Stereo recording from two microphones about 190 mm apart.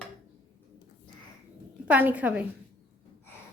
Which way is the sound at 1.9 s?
10° right (ahead or behind).